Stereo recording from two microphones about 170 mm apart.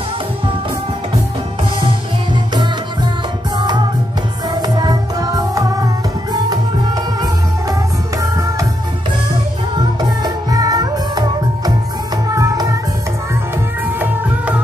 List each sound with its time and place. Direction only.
3.5 s music: 25° right (ahead or behind)
8.2 s music: 20° right (ahead or behind)
9.8 s music: 25° right (ahead or behind)
13.9 s music: 10° right (ahead or behind)